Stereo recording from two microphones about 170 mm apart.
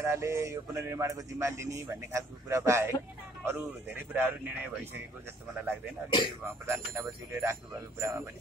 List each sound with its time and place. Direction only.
0.0 s speech: 15° right (ahead or behind)
6.0 s speech: 30° left (ahead or behind)
6.4 s speech: 15° right (ahead or behind)